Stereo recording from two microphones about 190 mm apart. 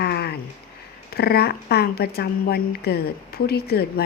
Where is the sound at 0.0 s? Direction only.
55° left (ahead or behind).